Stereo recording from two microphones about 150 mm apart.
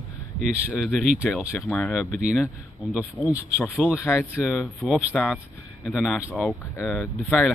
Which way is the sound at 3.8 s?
15° left (ahead or behind).